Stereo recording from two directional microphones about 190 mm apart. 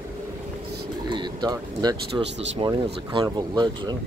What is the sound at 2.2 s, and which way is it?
Speech, 70° right (ahead or behind).